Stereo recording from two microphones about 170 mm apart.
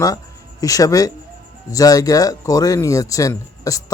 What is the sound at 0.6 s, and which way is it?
A man's voice, 20° left (ahead or behind).